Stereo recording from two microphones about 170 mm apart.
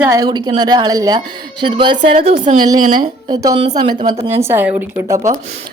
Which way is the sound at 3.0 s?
25° right (ahead or behind).